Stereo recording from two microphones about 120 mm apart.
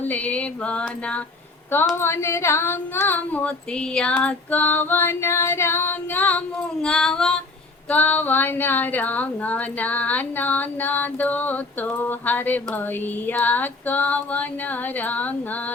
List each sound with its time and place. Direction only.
0.0 s a woman's voice: 10° left (ahead or behind)
2.0 s a woman's voice: 20° left (ahead or behind)
6.8 s female singing: 5° left (ahead or behind)
7.9 s a woman's voice: 15° left (ahead or behind)